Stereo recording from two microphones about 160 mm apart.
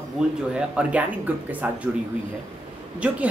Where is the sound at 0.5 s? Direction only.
5° right (ahead or behind).